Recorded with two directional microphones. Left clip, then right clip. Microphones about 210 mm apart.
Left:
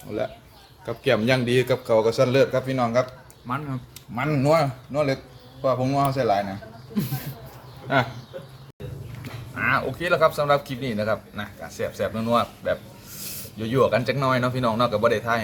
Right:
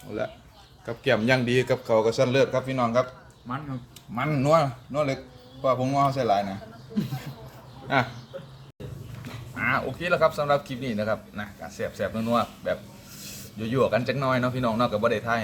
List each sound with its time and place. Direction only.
0.1 s speech: 5° left (ahead or behind)
3.5 s speech: 55° left (ahead or behind)
4.1 s speech: centre (ahead or behind)
7.9 s speech: 5° right (ahead or behind)
9.6 s speech: 5° left (ahead or behind)